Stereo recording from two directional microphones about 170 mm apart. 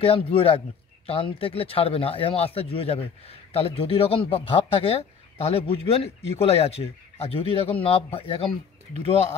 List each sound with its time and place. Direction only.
0.0 s speech: 35° left (ahead or behind)